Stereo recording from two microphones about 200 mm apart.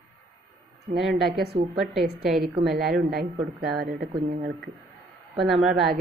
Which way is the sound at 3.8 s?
50° right (ahead or behind).